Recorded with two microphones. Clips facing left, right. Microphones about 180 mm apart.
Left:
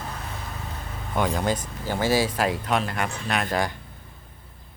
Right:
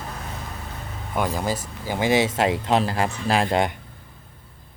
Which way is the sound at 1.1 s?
5° right (ahead or behind).